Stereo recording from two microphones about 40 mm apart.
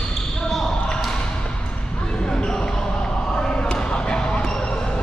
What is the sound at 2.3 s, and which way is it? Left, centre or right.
Basketball bounce, centre.